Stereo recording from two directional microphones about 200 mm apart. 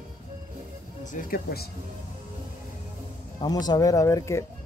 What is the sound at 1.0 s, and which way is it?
Speech, 45° left (ahead or behind).